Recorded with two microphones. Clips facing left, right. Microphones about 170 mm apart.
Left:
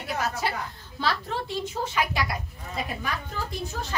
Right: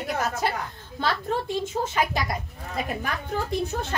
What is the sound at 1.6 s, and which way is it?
A woman's voice, 45° right (ahead or behind).